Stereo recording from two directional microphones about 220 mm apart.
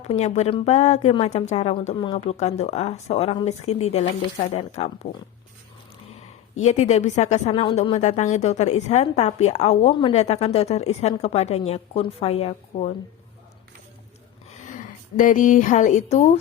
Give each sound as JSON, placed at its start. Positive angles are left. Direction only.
{"t": 0.0, "sound": "a woman's voice", "side_deg": 30}
{"t": 6.1, "sound": "a woman's voice", "side_deg": 30}
{"t": 14.5, "sound": "a woman's voice", "side_deg": 35}